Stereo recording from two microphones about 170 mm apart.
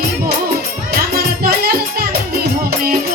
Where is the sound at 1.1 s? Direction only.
65° right (ahead or behind).